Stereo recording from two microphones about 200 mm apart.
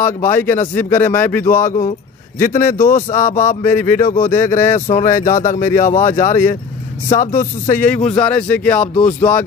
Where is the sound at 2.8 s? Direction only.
40° left (ahead or behind).